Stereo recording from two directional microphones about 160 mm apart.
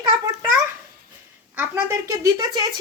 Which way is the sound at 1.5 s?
15° right (ahead or behind).